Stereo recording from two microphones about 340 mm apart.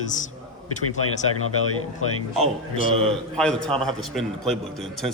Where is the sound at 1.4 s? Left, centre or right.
Left.